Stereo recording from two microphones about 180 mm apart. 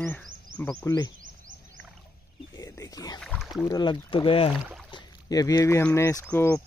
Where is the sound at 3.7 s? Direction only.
25° left (ahead or behind).